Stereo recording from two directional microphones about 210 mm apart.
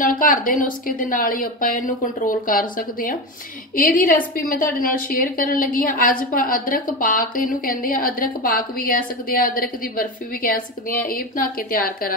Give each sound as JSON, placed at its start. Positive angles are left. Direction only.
{"t": 0.0, "sound": "a woman's voice", "side_deg": 40}